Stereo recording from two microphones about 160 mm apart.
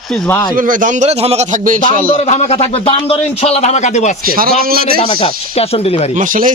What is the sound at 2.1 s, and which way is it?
A man's voice, 40° left (ahead or behind).